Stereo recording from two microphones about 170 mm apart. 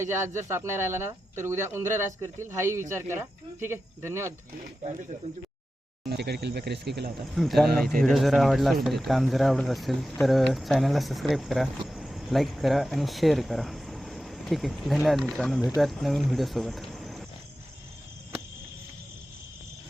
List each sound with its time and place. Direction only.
0.0 s speech: 15° right (ahead or behind)
4.8 s speech: 45° right (ahead or behind)
6.1 s speech: 75° right (ahead or behind)
7.3 s speech: centre (ahead or behind)